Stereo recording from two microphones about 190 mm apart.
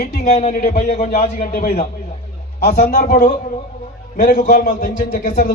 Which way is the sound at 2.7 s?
45° left (ahead or behind).